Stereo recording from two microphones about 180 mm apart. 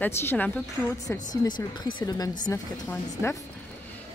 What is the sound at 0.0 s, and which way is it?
Speech, 10° left (ahead or behind).